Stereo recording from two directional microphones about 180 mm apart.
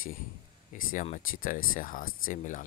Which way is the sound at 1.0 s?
45° left (ahead or behind).